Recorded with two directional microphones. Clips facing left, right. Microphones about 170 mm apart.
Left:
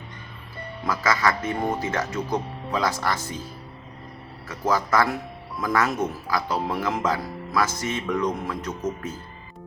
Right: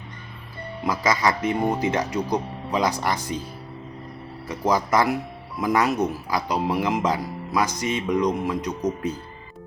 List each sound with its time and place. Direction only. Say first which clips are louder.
0.9 s speech: right 1 dB; 20° right (ahead or behind)
4.4 s speech: right 2 dB; 15° right (ahead or behind)